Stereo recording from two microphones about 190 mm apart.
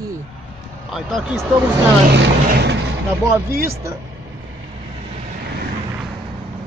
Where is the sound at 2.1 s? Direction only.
65° right (ahead or behind).